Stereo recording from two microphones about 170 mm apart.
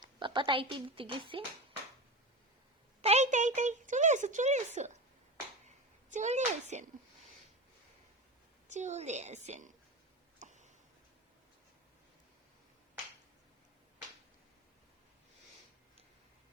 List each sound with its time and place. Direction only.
0.0 s a woman's voice: 30° right (ahead or behind)
3.0 s a woman's voice: 40° right (ahead or behind)
8.6 s a woman's voice: 45° right (ahead or behind)
10.4 s a sound: 45° right (ahead or behind)